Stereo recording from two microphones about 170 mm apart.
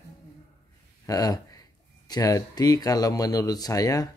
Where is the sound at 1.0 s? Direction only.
20° left (ahead or behind).